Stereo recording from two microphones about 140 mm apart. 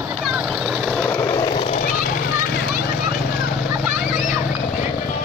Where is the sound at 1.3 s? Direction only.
35° left (ahead or behind).